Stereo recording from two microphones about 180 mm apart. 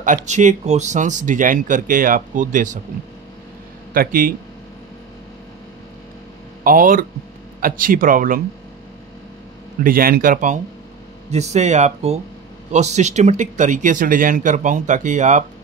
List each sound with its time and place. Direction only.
0.0 s speech: 45° right (ahead or behind)
3.9 s speech: 50° right (ahead or behind)
6.6 s speech: 50° right (ahead or behind)
9.8 s speech: 55° right (ahead or behind)